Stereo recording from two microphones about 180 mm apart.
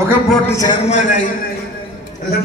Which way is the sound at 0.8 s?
40° left (ahead or behind).